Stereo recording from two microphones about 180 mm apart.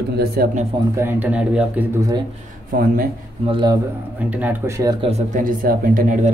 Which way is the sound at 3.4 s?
25° right (ahead or behind).